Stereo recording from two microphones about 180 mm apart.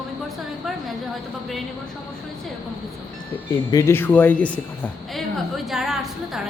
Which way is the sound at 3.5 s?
20° left (ahead or behind).